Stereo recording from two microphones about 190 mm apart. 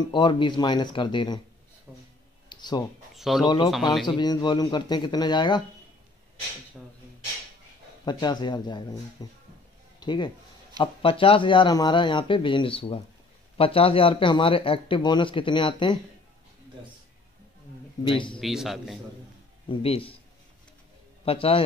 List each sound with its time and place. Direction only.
0.1 s a man's voice: 25° left (ahead or behind)
1.9 s speech: 10° right (ahead or behind)
2.5 s a sound: 25° left (ahead or behind)
3.2 s a man's voice: centre (ahead or behind)
3.4 s a man's voice: 25° left (ahead or behind)
8.0 s a man's voice: 20° left (ahead or behind)
18.0 s a man's voice: 25° left (ahead or behind)
18.4 s a man's voice: centre (ahead or behind)
19.7 s a man's voice: 30° left (ahead or behind)
21.3 s a man's voice: 30° left (ahead or behind)